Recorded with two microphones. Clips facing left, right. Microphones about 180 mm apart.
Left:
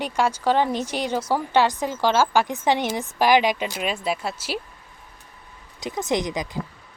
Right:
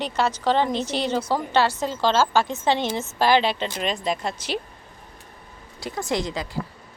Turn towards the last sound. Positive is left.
turn(degrees=15)  # may be behind; listen again after turning